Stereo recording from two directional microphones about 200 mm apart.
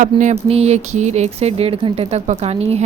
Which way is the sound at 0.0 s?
40° right (ahead or behind).